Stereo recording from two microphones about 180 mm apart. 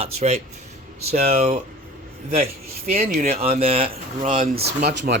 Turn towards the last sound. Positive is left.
turn(degrees=-65)  # may be behind; listen again after turning